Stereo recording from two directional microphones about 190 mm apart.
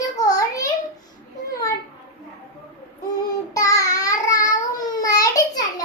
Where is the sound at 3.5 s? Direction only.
20° left (ahead or behind).